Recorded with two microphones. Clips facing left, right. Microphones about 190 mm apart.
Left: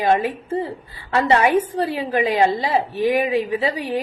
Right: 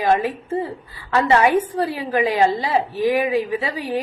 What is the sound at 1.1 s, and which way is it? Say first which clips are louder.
A woman's voice: even; 25° left (ahead or behind).